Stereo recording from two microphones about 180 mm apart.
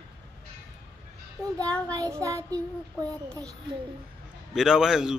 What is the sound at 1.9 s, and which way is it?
Child singing, 20° right (ahead or behind).